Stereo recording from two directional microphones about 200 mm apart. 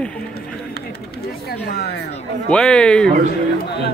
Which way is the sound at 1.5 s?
55° left (ahead or behind).